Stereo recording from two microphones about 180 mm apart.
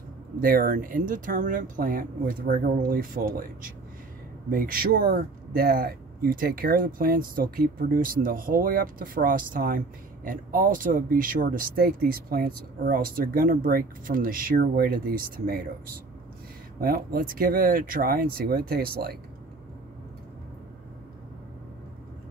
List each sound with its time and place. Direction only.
0.4 s a man's voice: 50° right (ahead or behind)
16.8 s a man's voice: 55° right (ahead or behind)